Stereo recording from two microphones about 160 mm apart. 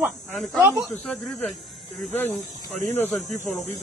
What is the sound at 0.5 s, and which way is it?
Speech, 10° right (ahead or behind).